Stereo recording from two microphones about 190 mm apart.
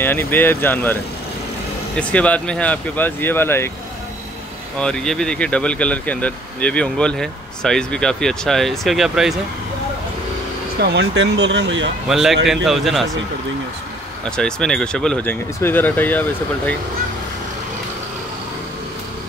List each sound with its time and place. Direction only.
0.0 s speech: 10° left (ahead or behind)
2.0 s speech: 5° left (ahead or behind)
4.7 s speech: 5° left (ahead or behind)
10.8 s speech: 65° right (ahead or behind)
12.1 s speech: centre (ahead or behind)
14.3 s speech: 5° left (ahead or behind)